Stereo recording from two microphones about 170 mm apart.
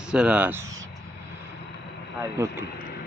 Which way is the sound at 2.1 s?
15° right (ahead or behind).